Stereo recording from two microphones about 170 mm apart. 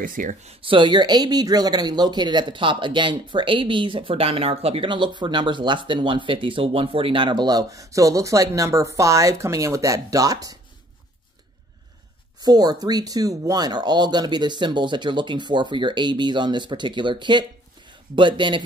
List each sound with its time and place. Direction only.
0.0 s speech: 55° right (ahead or behind)
0.6 s speech: 30° right (ahead or behind)
12.4 s speech: 25° right (ahead or behind)